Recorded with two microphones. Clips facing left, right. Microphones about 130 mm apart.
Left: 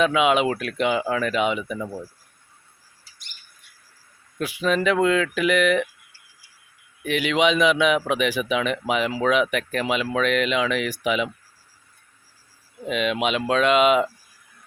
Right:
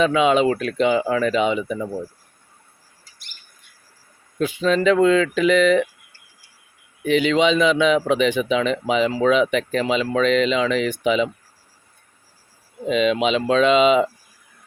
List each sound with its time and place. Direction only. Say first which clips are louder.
0.0 s speech: right 3 dB; 5° left (ahead or behind)
1.8 s speech: right 4 dB; 20° right (ahead or behind)
4.4 s speech: right 3 dB; 5° left (ahead or behind)
7.1 s a man's voice: right 4 dB; 5° left (ahead or behind)
12.9 s speech: right 5 dB; 5° left (ahead or behind)